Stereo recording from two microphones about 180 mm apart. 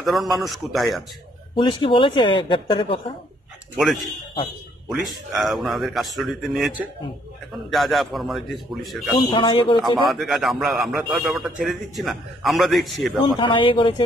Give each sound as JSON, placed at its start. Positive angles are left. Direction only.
{"t": 0.0, "sound": "a man's voice", "side_deg": 0}
{"t": 1.5, "sound": "speech", "side_deg": 30}
{"t": 3.7, "sound": "a man's voice", "side_deg": 0}
{"t": 9.3, "sound": "speech", "side_deg": 25}
{"t": 10.0, "sound": "a man's voice", "side_deg": 0}
{"t": 13.4, "sound": "speech", "side_deg": 30}